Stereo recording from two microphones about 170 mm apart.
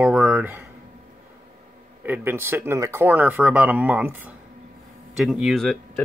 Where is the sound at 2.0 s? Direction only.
10° right (ahead or behind).